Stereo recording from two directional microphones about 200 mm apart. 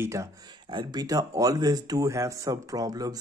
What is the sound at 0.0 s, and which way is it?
Speech, 15° right (ahead or behind).